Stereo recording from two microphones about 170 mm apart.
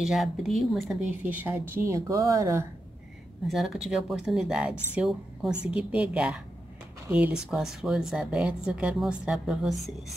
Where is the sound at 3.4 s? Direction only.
Centre (ahead or behind).